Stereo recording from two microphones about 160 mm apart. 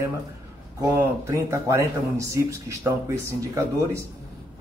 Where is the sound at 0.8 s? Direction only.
20° right (ahead or behind).